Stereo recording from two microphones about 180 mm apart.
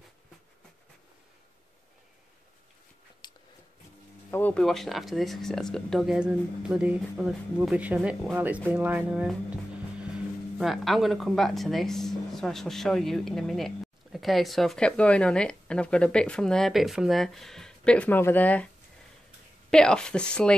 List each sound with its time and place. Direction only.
3.2 s a sound: 25° left (ahead or behind)
4.3 s speech: 10° left (ahead or behind)
19.7 s speech: 5° left (ahead or behind)